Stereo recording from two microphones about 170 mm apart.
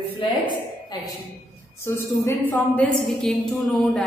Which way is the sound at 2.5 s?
5° left (ahead or behind).